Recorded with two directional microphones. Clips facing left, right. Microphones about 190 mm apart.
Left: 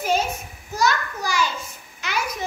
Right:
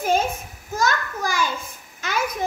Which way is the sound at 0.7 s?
50° right (ahead or behind).